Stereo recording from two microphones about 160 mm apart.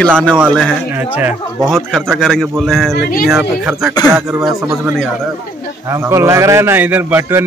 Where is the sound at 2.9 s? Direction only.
75° left (ahead or behind).